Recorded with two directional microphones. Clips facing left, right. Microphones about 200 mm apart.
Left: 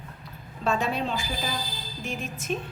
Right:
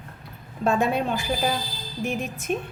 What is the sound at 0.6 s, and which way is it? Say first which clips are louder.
A woman's voice: right 4 dB; 55° right (ahead or behind).